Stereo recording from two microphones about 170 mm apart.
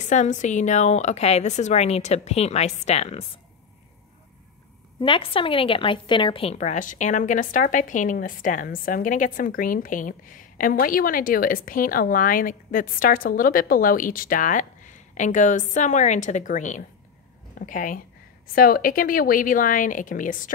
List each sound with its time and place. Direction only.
0.1 s a woman's voice: 45° left (ahead or behind)
5.0 s a woman's voice: 30° left (ahead or behind); by 20.5 s 50° left (ahead or behind)